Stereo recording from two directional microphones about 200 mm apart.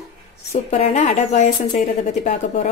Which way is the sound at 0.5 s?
35° left (ahead or behind).